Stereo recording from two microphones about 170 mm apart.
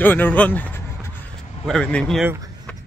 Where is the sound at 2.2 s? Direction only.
20° right (ahead or behind).